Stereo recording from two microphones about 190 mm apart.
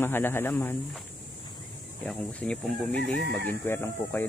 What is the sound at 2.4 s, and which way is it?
A man's voice, 5° left (ahead or behind).